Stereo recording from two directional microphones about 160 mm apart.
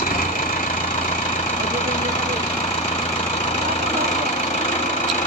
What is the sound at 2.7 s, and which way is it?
Engine, 45° left (ahead or behind).